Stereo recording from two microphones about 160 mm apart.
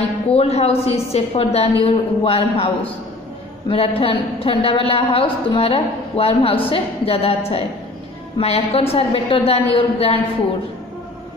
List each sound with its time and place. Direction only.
0.3 s a woman's voice: 40° left (ahead or behind)